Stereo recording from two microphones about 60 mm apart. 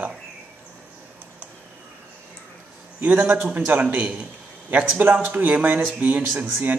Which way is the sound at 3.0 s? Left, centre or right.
Right.